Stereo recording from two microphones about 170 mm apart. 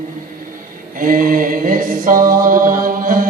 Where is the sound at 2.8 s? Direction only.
55° right (ahead or behind).